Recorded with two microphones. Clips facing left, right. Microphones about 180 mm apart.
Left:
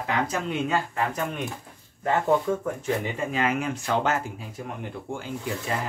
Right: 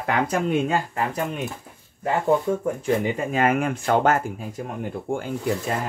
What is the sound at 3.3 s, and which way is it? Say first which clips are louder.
Speech: right 5 dB; 50° right (ahead or behind).